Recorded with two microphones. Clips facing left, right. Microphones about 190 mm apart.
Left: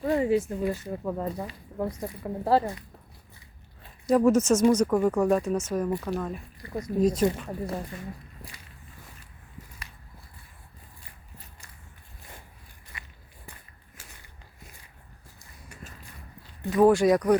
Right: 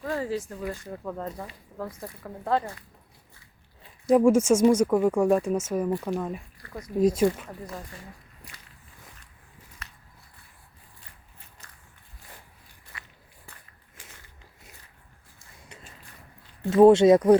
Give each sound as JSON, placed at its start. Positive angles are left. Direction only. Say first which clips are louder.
{"t": 0.0, "sound": "speech", "louder": "left 6 dB", "side_deg": 20}
{"t": 0.7, "sound": "speech", "louder": "left 4 dB", "side_deg": 10}
{"t": 2.4, "sound": "speech", "louder": "left 3 dB", "side_deg": 30}
{"t": 4.1, "sound": "speech", "louder": "right 2 dB", "side_deg": -10}
{"t": 6.6, "sound": "speech", "louder": "left 6 dB", "side_deg": 20}
{"t": 7.0, "sound": "speech", "louder": "right 2 dB", "side_deg": -10}
{"t": 12.9, "sound": "walk", "louder": "even", "side_deg": 15}
{"t": 15.7, "sound": "a sound", "louder": "left 3 dB", "side_deg": -20}
{"t": 16.6, "sound": "speech", "louder": "right 4 dB", "side_deg": -25}